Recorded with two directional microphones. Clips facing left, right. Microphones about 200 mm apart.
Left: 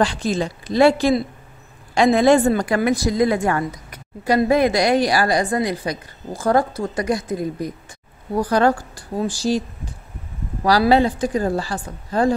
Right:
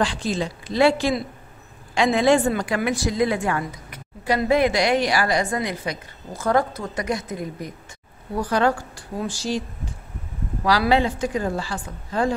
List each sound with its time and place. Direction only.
0.0 s a woman's voice: 45° left (ahead or behind)
10.6 s a woman's voice: 40° left (ahead or behind)